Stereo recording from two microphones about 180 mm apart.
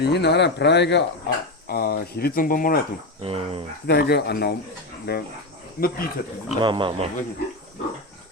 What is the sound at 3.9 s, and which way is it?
Speech, 65° left (ahead or behind).